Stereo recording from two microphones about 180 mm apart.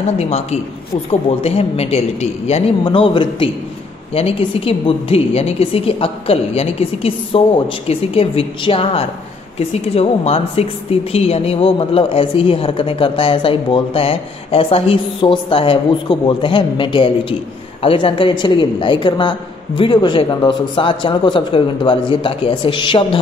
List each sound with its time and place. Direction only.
0.2 s speech: 35° left (ahead or behind)